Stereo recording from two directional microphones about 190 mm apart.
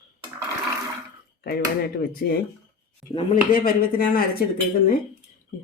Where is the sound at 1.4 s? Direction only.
55° left (ahead or behind).